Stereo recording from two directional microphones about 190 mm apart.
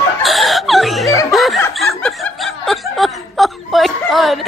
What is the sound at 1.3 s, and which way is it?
Snicker, centre (ahead or behind).